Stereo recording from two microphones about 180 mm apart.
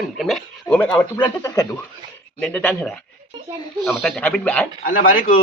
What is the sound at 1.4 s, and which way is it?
Speech, 20° left (ahead or behind).